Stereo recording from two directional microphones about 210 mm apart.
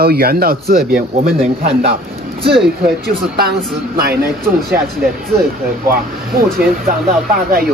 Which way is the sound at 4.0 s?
50° right (ahead or behind).